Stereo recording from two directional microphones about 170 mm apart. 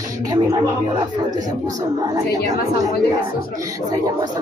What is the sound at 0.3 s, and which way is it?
Speech, 25° right (ahead or behind).